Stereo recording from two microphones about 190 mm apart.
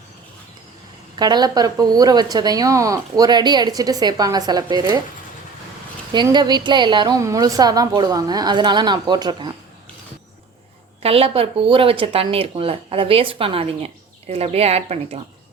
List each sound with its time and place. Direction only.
1.2 s speech: 20° right (ahead or behind)
6.1 s speech: 20° right (ahead or behind)
11.0 s speech: 30° right (ahead or behind)